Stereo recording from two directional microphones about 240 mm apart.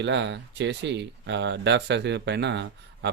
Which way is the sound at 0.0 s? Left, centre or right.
Right.